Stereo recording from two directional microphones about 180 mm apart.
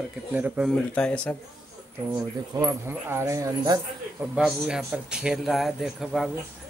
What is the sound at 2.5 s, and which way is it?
Speech, 15° right (ahead or behind).